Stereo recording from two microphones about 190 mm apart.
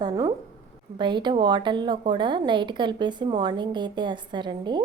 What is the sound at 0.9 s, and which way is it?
A woman's voice, 25° right (ahead or behind).